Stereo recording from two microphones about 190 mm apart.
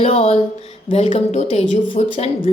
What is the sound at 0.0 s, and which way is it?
Speech, 30° left (ahead or behind).